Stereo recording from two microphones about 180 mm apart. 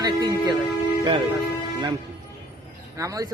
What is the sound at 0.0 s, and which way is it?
Music, 20° right (ahead or behind).